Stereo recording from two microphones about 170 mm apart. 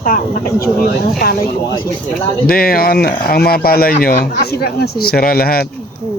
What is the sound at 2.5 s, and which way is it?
Speech, 60° left (ahead or behind).